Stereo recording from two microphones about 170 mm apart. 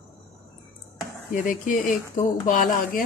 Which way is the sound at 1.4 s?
50° left (ahead or behind).